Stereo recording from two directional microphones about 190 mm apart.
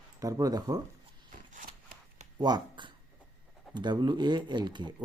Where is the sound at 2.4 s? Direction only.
25° right (ahead or behind).